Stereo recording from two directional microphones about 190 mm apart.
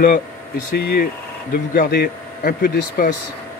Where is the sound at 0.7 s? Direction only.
50° left (ahead or behind).